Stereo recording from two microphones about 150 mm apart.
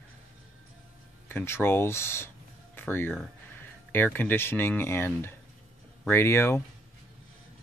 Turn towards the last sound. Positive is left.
turn(degrees=15)  # may be behind; listen again after turning